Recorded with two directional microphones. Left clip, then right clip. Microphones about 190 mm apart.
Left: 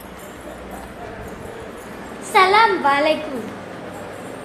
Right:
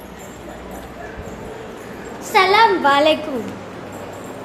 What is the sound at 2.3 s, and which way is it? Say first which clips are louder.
Speech: right 1 dB; 15° right (ahead or behind).